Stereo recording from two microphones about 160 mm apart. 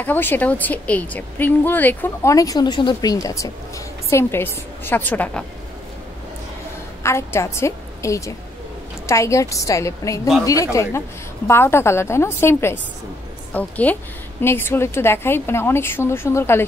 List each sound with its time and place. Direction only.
0.0 s a woman's voice: 10° left (ahead or behind)
7.0 s a woman's voice: 15° left (ahead or behind)